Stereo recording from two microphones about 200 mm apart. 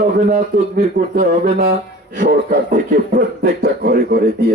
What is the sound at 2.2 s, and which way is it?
Speech, 40° right (ahead or behind).